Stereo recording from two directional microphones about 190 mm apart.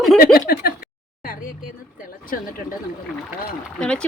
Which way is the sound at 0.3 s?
55° left (ahead or behind).